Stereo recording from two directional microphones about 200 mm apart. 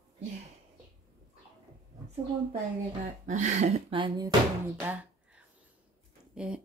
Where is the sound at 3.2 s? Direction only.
35° right (ahead or behind).